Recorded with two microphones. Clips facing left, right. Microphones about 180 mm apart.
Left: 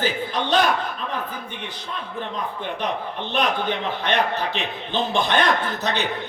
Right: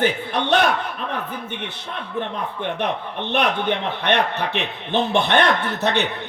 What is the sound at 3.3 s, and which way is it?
A man's voice, 65° right (ahead or behind).